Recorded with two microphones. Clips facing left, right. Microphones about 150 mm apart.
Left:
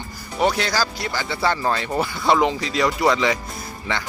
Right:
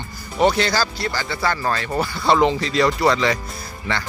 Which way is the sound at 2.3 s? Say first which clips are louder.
Right 3 dB; 5° left (ahead or behind).